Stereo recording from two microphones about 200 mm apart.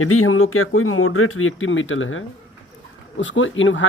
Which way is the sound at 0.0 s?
90° left.